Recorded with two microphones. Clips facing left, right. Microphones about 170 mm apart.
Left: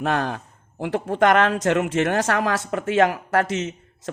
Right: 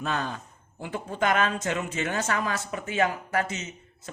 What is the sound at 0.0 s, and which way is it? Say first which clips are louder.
Speech: left 7 dB; 75° left (ahead or behind).